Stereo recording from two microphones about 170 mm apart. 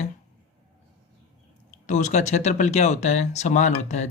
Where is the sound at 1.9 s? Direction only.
45° left (ahead or behind).